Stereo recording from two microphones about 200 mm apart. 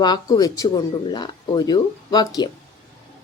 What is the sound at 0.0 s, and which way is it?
A woman's voice, 20° left (ahead or behind).